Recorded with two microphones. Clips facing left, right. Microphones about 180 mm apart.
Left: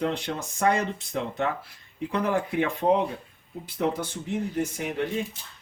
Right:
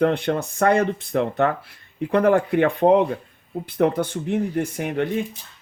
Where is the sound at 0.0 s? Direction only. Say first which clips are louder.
Right 8 dB; 60° right (ahead or behind).